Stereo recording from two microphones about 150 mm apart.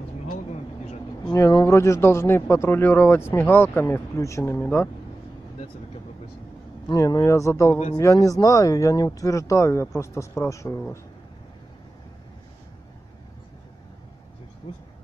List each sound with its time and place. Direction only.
0.3 s vehicle: 45° left (ahead or behind)
1.2 s speech: 25° left (ahead or behind)
6.9 s speech: 25° left (ahead or behind)